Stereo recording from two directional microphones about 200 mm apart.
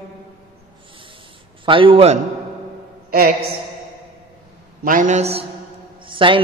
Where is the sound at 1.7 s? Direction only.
25° right (ahead or behind).